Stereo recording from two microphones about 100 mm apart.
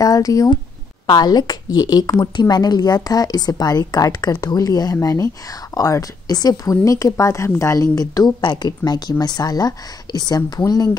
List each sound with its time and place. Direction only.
0.0 s speech: 35° left (ahead or behind)